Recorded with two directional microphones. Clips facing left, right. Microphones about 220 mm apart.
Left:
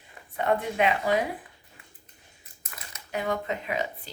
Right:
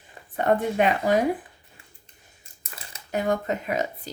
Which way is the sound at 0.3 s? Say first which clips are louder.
Right 4 dB; 45° right (ahead or behind).